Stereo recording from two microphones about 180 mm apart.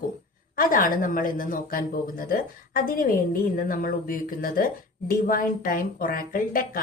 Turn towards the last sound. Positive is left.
turn(degrees=50)  # may be behind; listen again after turning